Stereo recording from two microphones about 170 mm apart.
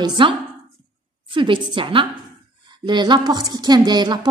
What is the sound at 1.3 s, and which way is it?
A woman's voice, 30° right (ahead or behind).